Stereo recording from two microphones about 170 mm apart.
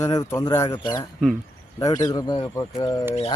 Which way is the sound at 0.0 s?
20° left (ahead or behind).